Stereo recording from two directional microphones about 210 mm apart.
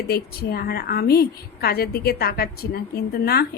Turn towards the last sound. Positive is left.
turn(degrees=50)  # may be behind; listen again after turning